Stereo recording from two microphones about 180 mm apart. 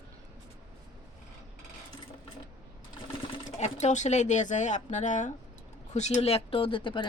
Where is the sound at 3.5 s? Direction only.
40° left (ahead or behind).